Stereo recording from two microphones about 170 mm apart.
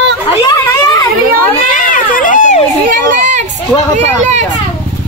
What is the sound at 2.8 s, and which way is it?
Children playing, 50° right (ahead or behind).